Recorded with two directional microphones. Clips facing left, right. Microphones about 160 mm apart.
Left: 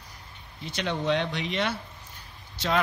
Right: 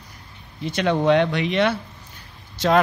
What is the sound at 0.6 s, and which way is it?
Speech, 55° right (ahead or behind).